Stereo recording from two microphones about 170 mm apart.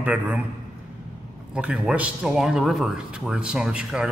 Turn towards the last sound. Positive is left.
turn(degrees=-5)  # may be behind; listen again after turning